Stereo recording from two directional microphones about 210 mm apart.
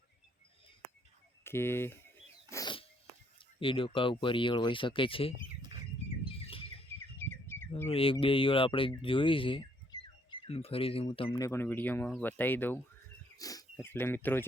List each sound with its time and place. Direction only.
1.5 s speech: 10° left (ahead or behind)
2.5 s a sound: 20° left (ahead or behind)
3.6 s speech: 25° left (ahead or behind)
6.3 s bird: 25° left (ahead or behind)
7.2 s a sound: 10° left (ahead or behind)
7.9 s speech: 25° left (ahead or behind)
11.3 s speech: 15° left (ahead or behind)